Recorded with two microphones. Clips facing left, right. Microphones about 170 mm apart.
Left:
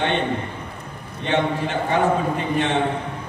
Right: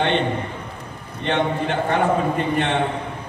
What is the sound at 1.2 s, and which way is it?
A man's voice, 55° right (ahead or behind).